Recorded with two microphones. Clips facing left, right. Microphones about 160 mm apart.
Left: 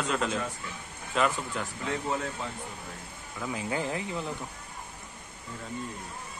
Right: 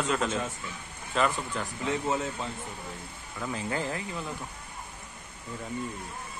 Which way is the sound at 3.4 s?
10° left (ahead or behind).